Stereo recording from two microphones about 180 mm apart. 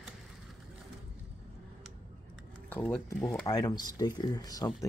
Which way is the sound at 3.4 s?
20° left (ahead or behind).